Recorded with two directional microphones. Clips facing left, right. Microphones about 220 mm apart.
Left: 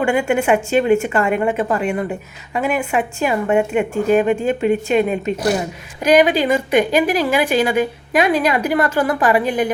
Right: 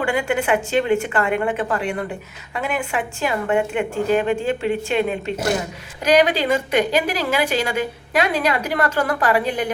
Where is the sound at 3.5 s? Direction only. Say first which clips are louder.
Left 4 dB; 25° left (ahead or behind).